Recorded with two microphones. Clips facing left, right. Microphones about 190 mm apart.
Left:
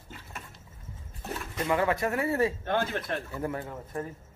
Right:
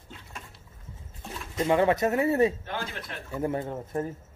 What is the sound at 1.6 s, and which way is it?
Speech, 25° right (ahead or behind).